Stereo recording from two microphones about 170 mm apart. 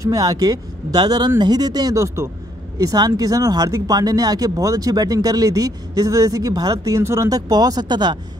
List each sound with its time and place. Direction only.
0.0 s speech: 20° right (ahead or behind)